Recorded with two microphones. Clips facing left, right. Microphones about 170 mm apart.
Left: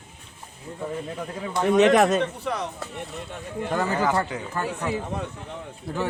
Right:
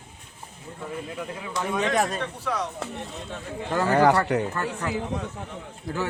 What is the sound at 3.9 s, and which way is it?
Speech, 70° right (ahead or behind).